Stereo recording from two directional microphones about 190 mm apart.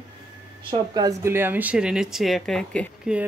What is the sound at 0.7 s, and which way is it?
Speech, 20° right (ahead or behind).